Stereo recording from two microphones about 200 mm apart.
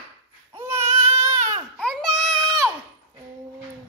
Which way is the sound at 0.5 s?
15° right (ahead or behind).